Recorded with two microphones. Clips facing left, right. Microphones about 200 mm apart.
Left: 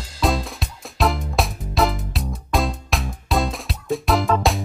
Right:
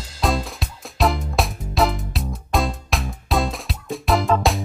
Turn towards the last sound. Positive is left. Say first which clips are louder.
# even
turn(degrees=0)  # may be behind; listen again after turning